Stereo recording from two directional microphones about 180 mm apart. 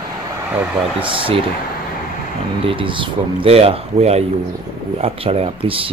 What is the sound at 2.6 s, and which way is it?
Speech, 30° right (ahead or behind).